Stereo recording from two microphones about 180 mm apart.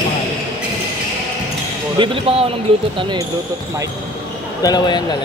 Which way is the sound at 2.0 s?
30° right (ahead or behind).